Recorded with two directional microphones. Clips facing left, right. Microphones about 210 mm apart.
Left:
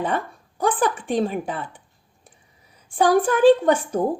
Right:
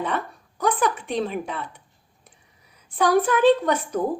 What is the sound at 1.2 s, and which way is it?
Speech, 30° left (ahead or behind).